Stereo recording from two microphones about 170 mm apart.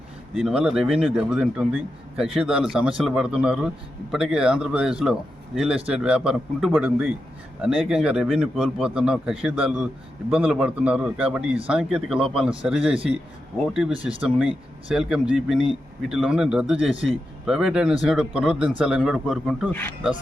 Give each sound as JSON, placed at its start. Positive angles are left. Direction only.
{"t": 0.3, "sound": "a man's voice", "side_deg": -5}
{"t": 13.9, "sound": "speech", "side_deg": -35}
{"t": 14.2, "sound": "a man's voice", "side_deg": -5}